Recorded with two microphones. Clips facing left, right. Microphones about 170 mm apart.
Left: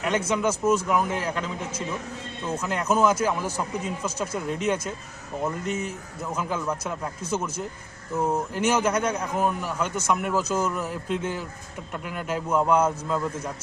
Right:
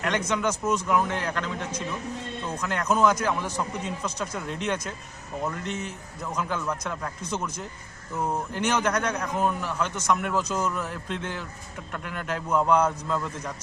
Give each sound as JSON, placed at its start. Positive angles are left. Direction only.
{"t": 0.0, "sound": "speech", "side_deg": 5}